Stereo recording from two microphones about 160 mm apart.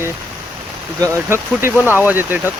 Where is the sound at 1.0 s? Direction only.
15° right (ahead or behind).